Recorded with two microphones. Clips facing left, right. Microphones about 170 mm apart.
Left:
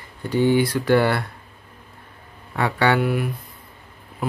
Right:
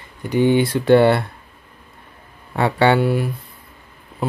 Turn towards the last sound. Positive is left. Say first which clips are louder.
# right 4 dB
turn(degrees=-30)  # may be behind; listen again after turning